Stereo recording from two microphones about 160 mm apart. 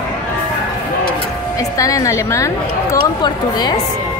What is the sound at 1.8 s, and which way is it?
A woman's voice, 20° left (ahead or behind).